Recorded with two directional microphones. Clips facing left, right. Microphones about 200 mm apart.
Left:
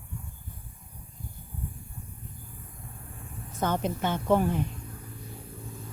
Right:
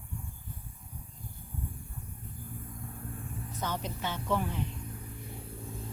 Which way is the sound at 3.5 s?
50° left (ahead or behind).